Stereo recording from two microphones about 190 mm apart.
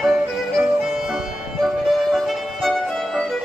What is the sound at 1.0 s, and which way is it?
Music, centre (ahead or behind).